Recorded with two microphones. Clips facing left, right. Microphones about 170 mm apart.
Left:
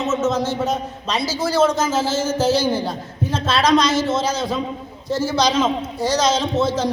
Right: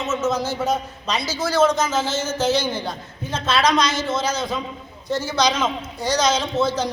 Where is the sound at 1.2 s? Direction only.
30° left (ahead or behind).